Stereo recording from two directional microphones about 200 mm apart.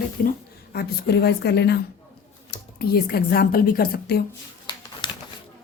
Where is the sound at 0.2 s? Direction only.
45° left (ahead or behind).